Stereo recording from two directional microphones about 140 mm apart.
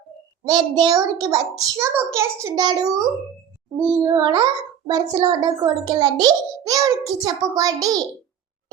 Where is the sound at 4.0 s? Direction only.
30° right (ahead or behind).